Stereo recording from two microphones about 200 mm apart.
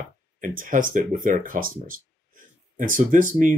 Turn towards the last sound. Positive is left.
turn(degrees=-40)  # may be behind; listen again after turning